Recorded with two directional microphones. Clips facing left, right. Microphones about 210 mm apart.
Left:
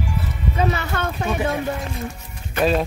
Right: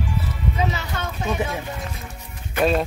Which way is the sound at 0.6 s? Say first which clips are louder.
Left 6 dB; 60° left (ahead or behind).